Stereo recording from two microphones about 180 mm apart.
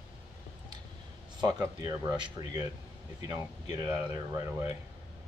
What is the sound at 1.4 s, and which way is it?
Speech, 20° right (ahead or behind).